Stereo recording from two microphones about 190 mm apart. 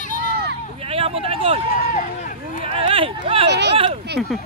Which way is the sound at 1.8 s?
45° left (ahead or behind).